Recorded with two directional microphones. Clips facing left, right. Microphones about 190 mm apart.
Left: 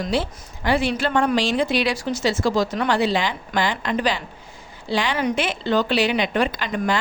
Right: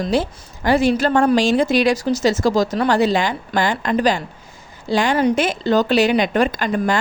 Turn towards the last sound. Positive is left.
turn(degrees=-45)  # may be behind; listen again after turning